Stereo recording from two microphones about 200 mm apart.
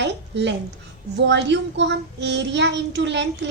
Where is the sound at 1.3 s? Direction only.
60° right (ahead or behind).